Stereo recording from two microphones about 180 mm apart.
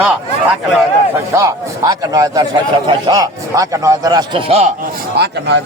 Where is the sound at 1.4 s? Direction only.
20° right (ahead or behind).